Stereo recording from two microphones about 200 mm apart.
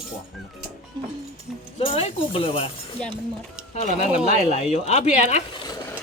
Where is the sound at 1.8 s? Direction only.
30° left (ahead or behind).